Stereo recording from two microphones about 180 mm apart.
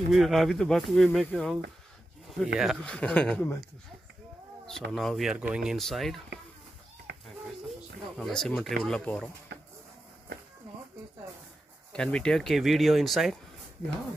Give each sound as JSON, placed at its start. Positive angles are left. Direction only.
{"t": 0.1, "sound": "speech", "side_deg": 0}
{"t": 4.9, "sound": "speech", "side_deg": 0}
{"t": 7.1, "sound": "a sound", "side_deg": -70}
{"t": 8.2, "sound": "speech", "side_deg": 5}
{"t": 11.9, "sound": "speech", "side_deg": 5}